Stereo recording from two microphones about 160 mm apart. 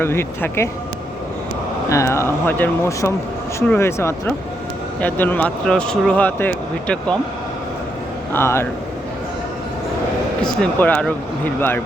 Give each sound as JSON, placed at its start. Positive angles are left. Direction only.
{"t": 0.0, "sound": "speech", "side_deg": 15}
{"t": 1.9, "sound": "speech", "side_deg": 20}
{"t": 8.3, "sound": "speech", "side_deg": 15}
{"t": 10.6, "sound": "speech", "side_deg": 10}